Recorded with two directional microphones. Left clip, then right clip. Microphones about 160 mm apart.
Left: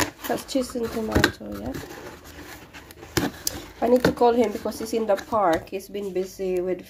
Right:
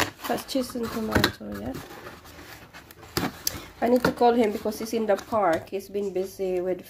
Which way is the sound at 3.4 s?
Centre (ahead or behind).